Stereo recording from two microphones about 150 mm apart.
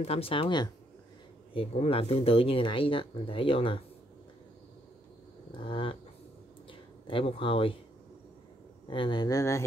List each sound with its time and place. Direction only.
0.0 s speech: 40° left (ahead or behind)
5.6 s speech: 35° left (ahead or behind)
8.9 s speech: 30° left (ahead or behind)